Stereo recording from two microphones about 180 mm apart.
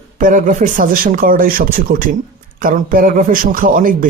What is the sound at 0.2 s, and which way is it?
Speech, 45° right (ahead or behind).